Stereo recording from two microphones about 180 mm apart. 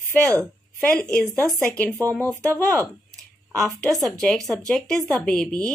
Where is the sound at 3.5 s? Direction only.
Centre (ahead or behind).